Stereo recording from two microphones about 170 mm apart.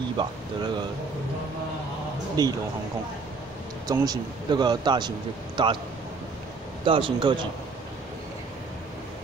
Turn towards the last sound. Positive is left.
turn(degrees=-30)  # may be behind; listen again after turning